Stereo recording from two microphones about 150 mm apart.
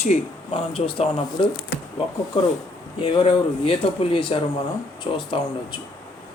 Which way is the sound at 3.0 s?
40° left (ahead or behind).